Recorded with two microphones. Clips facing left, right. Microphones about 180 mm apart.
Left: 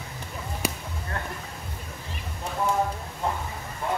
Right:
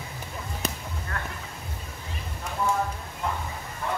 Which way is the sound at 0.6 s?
10° left (ahead or behind).